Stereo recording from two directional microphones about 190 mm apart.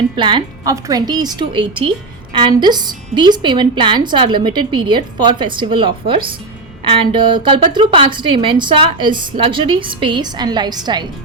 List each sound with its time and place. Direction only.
0.2 s a woman's voice: 25° right (ahead or behind)